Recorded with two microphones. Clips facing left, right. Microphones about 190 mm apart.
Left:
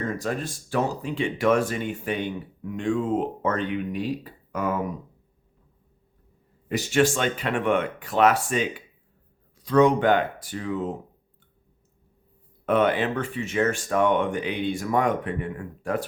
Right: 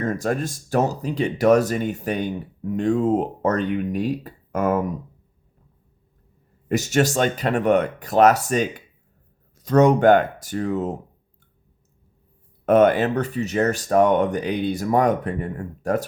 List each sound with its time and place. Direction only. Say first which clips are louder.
0.0 s speech: right 5 dB; 45° right (ahead or behind)
6.7 s speech: right 2 dB; 45° right (ahead or behind)
12.6 s speech: right 6 dB; 45° right (ahead or behind)